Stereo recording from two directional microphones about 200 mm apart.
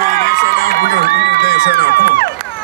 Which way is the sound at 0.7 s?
55° left (ahead or behind).